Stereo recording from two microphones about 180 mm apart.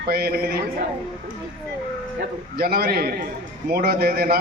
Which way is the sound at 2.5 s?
60° right (ahead or behind).